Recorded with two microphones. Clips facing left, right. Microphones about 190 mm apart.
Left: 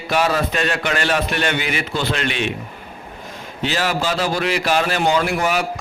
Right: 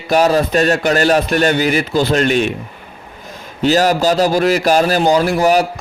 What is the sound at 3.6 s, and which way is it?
A man's voice, 40° right (ahead or behind).